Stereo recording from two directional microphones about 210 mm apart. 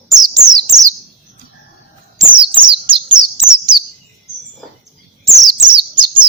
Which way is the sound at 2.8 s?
25° right (ahead or behind).